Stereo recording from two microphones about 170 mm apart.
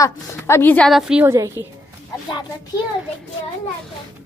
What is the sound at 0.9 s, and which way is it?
Speech, 5° right (ahead or behind).